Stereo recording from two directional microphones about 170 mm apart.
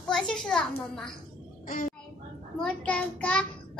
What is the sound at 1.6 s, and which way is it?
Speech, 55° left (ahead or behind).